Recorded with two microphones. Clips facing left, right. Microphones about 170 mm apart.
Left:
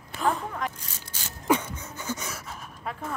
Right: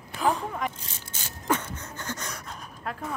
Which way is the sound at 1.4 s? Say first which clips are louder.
Left 3 dB; 10° left (ahead or behind).